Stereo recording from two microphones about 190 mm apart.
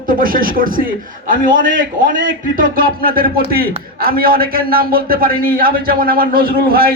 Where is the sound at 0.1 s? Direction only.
50° right (ahead or behind).